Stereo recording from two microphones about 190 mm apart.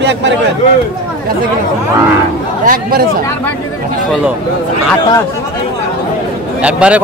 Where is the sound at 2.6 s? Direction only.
50° right (ahead or behind).